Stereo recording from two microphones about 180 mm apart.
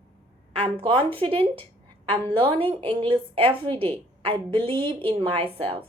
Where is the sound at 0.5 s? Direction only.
30° right (ahead or behind).